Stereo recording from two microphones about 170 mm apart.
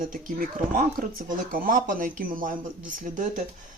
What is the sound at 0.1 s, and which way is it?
Speech, 55° right (ahead or behind).